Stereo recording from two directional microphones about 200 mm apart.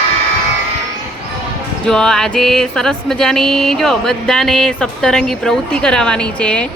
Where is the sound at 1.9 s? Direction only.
5° left (ahead or behind).